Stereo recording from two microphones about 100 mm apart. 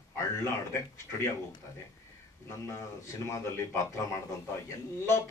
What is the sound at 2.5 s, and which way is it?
A man's voice, 30° left (ahead or behind).